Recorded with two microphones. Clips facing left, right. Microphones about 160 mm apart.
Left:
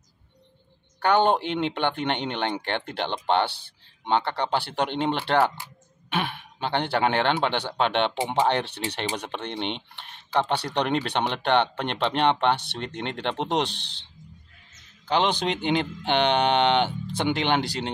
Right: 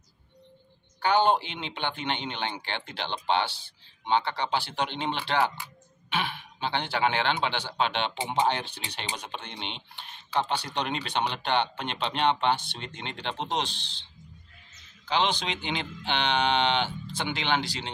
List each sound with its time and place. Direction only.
1.0 s speech: 60° left (ahead or behind)
15.0 s speech: 55° left (ahead or behind)